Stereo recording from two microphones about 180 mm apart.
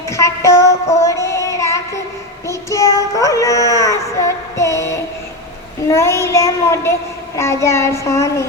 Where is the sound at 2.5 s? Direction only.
15° left (ahead or behind).